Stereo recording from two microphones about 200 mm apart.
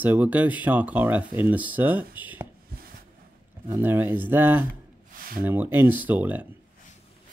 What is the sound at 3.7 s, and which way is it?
Speech, 10° right (ahead or behind).